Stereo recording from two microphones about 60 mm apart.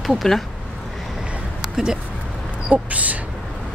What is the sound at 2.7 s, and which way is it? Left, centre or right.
Speech, right.